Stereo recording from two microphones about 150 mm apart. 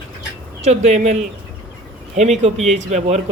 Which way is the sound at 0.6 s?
45° right (ahead or behind).